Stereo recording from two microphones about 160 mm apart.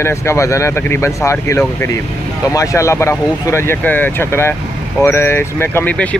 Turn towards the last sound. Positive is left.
turn(degrees=10)  # may be behind; listen again after turning